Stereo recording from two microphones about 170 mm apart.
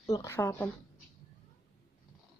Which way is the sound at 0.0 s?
20° left (ahead or behind).